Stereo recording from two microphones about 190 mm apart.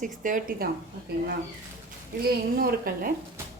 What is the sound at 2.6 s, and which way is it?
Speech, 50° right (ahead or behind).